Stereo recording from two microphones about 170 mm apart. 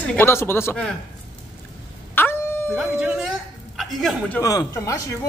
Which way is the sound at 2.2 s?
10° left (ahead or behind).